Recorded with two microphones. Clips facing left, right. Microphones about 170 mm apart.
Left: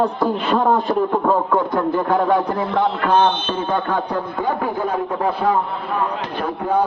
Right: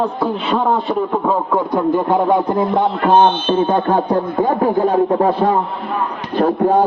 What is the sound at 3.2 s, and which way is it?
Speech, 40° right (ahead or behind).